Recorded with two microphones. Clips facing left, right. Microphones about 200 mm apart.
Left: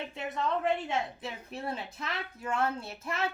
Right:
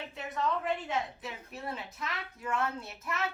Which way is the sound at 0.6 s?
30° left (ahead or behind).